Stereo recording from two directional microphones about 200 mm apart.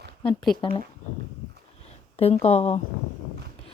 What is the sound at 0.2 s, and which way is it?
Speech, 25° left (ahead or behind).